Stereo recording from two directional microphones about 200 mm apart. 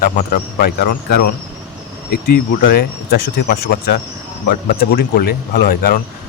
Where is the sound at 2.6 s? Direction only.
55° left (ahead or behind).